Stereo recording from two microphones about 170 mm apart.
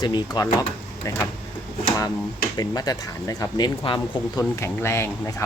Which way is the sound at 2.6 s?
20° left (ahead or behind).